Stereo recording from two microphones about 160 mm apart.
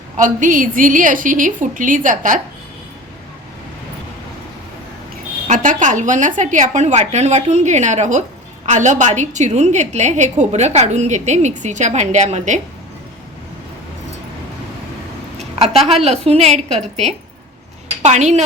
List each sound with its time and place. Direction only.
0.2 s a woman's voice: 55° right (ahead or behind)
5.5 s a woman's voice: 50° right (ahead or behind)
15.9 s a woman's voice: 40° right (ahead or behind)
18.0 s a woman's voice: 45° right (ahead or behind)